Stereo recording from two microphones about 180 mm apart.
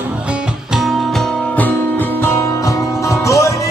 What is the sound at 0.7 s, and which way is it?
Music, centre (ahead or behind).